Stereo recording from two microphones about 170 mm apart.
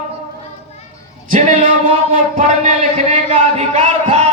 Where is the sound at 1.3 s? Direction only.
45° right (ahead or behind).